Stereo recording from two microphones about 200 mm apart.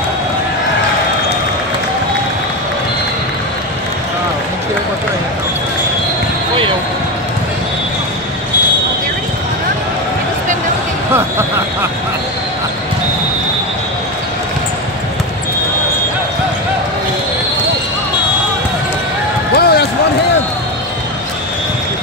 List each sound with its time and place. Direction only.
19.5 s basketball bounce: 50° left (ahead or behind)